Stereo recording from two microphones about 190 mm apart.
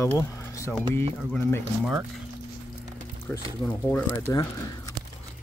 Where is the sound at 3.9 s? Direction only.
10° left (ahead or behind).